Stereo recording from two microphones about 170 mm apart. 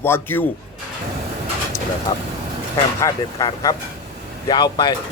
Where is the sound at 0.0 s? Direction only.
10° left (ahead or behind).